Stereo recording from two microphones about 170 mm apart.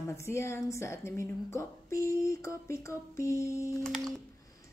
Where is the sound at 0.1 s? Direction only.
15° left (ahead or behind).